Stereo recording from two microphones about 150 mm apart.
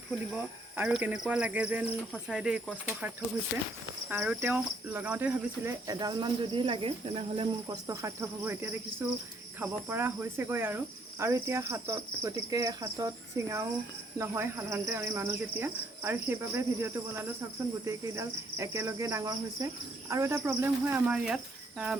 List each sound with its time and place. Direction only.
0.8 s speech: 10° right (ahead or behind)
4.1 s speech: 10° right (ahead or behind)
6.0 s speech: 30° right (ahead or behind)
7.7 s cricket: 20° right (ahead or behind)
14.2 s speech: 15° right (ahead or behind)